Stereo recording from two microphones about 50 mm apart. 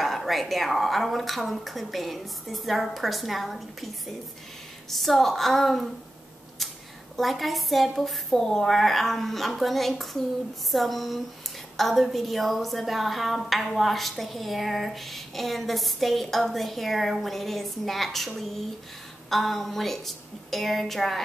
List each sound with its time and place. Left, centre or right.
0.0 s a woman's voice: centre
7.2 s a woman's voice: centre